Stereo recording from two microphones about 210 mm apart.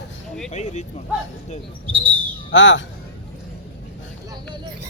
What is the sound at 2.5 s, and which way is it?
Speech, 60° left (ahead or behind).